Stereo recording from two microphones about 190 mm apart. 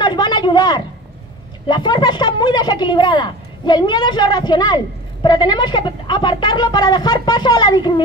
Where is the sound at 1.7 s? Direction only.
20° left (ahead or behind).